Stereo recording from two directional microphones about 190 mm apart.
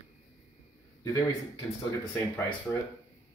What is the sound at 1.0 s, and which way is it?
Speech, 20° left (ahead or behind).